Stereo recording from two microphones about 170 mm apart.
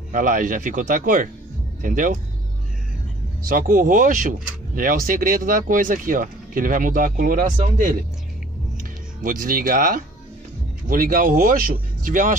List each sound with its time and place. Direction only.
0.1 s speech: 50° right (ahead or behind)
3.4 s speech: 55° right (ahead or behind)
9.2 s speech: 55° right (ahead or behind)